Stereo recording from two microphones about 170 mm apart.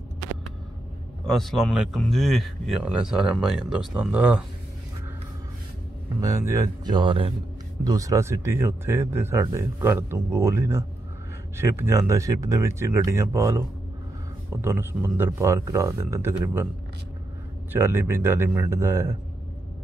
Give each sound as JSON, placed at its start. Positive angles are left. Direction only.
{"t": 1.2, "sound": "speech", "side_deg": 0}
{"t": 6.2, "sound": "speech", "side_deg": -20}
{"t": 7.8, "sound": "speech", "side_deg": -20}
{"t": 17.7, "sound": "speech", "side_deg": -15}